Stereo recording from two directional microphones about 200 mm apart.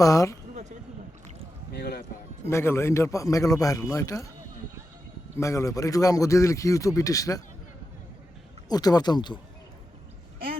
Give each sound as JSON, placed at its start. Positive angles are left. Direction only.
{"t": 0.0, "sound": "a man's voice", "side_deg": 15}
{"t": 1.7, "sound": "a sound", "side_deg": 50}
{"t": 2.5, "sound": "a man's voice", "side_deg": 15}
{"t": 5.4, "sound": "a man's voice", "side_deg": 15}
{"t": 8.7, "sound": "speech", "side_deg": 20}